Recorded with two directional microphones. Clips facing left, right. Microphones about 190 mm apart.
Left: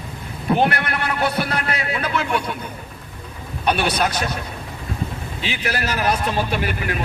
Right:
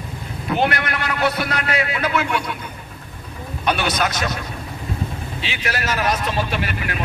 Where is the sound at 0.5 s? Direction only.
30° left (ahead or behind).